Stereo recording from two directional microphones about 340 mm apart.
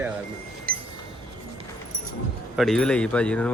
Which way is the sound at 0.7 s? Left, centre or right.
Right.